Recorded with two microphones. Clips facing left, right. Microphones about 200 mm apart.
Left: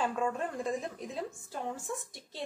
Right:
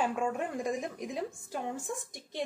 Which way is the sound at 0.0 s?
15° right (ahead or behind).